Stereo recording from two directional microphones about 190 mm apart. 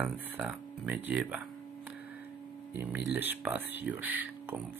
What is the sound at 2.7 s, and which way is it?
Speech, 10° right (ahead or behind).